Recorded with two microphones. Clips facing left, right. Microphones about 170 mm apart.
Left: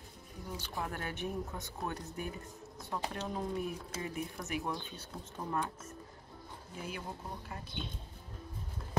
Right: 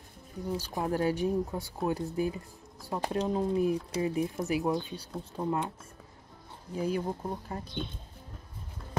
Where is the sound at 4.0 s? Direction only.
15° right (ahead or behind).